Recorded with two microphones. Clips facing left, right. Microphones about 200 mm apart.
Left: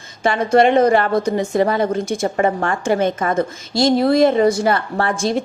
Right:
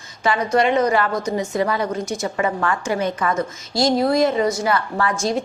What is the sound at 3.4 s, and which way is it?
Speech, 25° left (ahead or behind).